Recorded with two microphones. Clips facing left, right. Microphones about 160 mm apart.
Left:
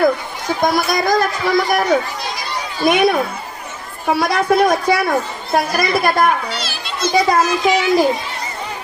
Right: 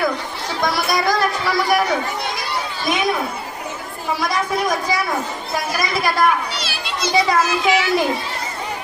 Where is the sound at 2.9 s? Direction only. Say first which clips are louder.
Left 5 dB; 65° left (ahead or behind).